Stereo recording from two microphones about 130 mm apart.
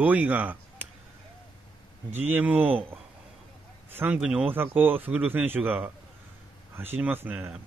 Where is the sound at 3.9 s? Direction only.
10° right (ahead or behind).